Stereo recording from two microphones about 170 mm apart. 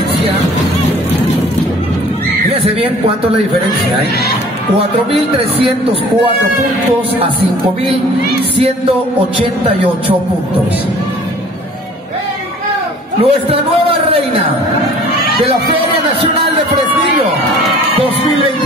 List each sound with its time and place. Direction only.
2.5 s a sound: 35° right (ahead or behind)
5.1 s a man's voice: 35° right (ahead or behind)
8.5 s a man's voice: 35° right (ahead or behind)
13.2 s a man's voice: 35° right (ahead or behind)